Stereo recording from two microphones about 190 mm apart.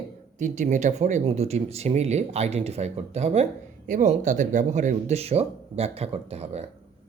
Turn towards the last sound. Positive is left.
turn(degrees=-35)  # may be behind; listen again after turning